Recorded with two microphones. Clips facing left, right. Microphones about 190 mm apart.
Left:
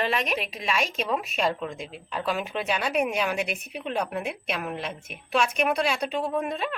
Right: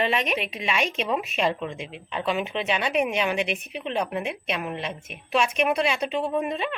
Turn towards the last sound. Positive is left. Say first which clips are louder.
# right 2 dB
turn(degrees=-5)  # may be behind; listen again after turning